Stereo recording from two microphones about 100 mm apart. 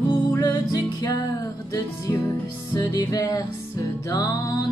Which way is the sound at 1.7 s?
30° left (ahead or behind).